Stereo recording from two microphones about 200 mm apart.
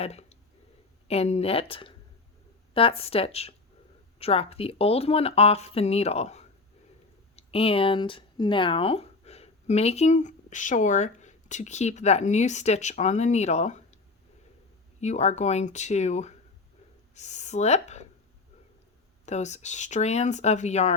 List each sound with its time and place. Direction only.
0.0 s speech: 30° left (ahead or behind)
15.0 s speech: 35° left (ahead or behind)
19.2 s speech: 35° left (ahead or behind)